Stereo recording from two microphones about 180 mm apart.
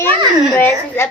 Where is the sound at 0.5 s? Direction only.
10° left (ahead or behind).